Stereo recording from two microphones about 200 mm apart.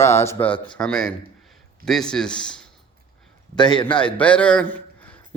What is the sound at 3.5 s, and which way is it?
Speech, 20° left (ahead or behind).